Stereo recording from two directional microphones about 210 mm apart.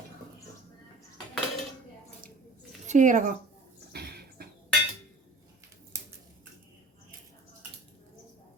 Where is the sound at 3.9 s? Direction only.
50° right (ahead or behind).